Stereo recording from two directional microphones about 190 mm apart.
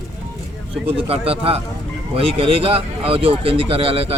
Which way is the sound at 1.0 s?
30° right (ahead or behind).